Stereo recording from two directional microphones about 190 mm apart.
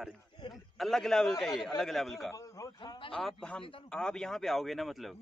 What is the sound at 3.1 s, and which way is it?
A man's voice, 5° left (ahead or behind).